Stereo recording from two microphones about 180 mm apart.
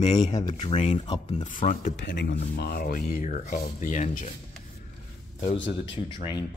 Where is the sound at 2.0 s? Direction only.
75° left (ahead or behind).